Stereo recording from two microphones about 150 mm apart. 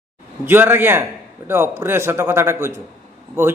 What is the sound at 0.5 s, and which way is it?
A man's voice, 15° right (ahead or behind).